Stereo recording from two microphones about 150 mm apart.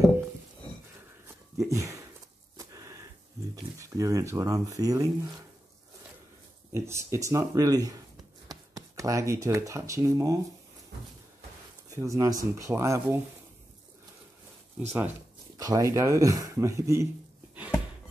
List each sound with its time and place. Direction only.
1.6 s speech: 20° right (ahead or behind)
2.5 s a sound: 20° right (ahead or behind)
3.8 s speech: 20° right (ahead or behind)
6.7 s speech: 15° right (ahead or behind)
12.0 s speech: 20° right (ahead or behind)
14.9 s speech: 10° right (ahead or behind)
15.5 s speech: 25° right (ahead or behind)